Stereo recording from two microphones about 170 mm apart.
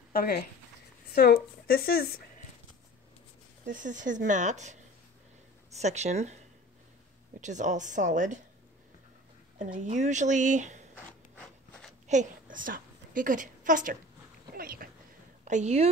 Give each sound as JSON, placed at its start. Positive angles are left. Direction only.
{"t": 0.1, "sound": "speech", "side_deg": 65}
{"t": 3.6, "sound": "speech", "side_deg": -50}
{"t": 5.8, "sound": "speech", "side_deg": -40}
{"t": 9.6, "sound": "speech", "side_deg": -45}
{"t": 11.3, "sound": "rub", "side_deg": 5}
{"t": 12.1, "sound": "a woman's voice", "side_deg": -50}
{"t": 15.4, "sound": "speech", "side_deg": -45}